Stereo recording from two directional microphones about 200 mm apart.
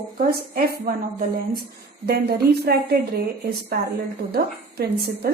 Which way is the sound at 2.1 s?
50° right (ahead or behind).